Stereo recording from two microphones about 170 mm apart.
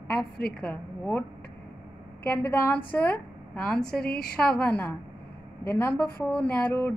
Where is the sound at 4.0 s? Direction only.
65° left (ahead or behind).